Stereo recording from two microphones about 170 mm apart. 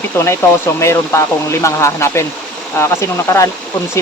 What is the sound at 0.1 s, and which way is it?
Speech, 15° left (ahead or behind).